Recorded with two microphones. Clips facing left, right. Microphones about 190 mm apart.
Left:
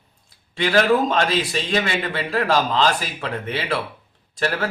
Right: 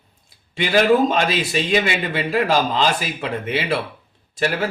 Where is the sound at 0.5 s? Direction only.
10° right (ahead or behind).